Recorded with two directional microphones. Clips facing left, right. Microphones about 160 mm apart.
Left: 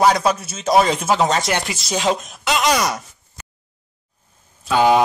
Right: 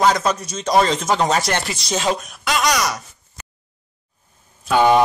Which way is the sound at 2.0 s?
20° left (ahead or behind).